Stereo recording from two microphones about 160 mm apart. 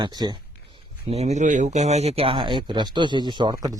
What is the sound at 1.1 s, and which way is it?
Speech, 45° right (ahead or behind).